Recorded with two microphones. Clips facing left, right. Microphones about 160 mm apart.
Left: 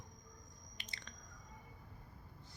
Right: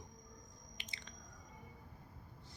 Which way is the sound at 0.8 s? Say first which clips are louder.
Left 1 dB; 15° right (ahead or behind).